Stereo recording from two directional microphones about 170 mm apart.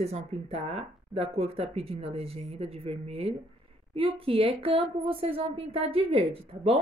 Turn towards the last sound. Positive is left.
turn(degrees=-35)  # may be behind; listen again after turning